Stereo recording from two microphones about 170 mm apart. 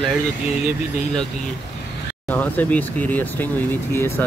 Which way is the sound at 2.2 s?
10° left (ahead or behind).